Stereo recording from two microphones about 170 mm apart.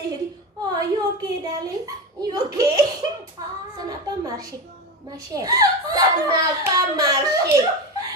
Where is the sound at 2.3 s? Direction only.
20° right (ahead or behind).